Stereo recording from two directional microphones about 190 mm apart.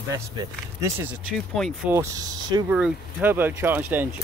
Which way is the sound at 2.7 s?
5° right (ahead or behind).